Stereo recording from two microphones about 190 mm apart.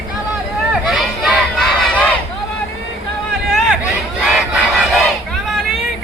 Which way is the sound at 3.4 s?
Centre (ahead or behind).